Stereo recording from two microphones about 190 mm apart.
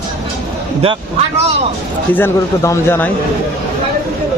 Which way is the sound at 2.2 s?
15° left (ahead or behind).